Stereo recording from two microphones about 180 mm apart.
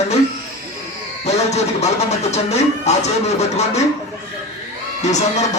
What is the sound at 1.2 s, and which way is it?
Speech, 40° left (ahead or behind).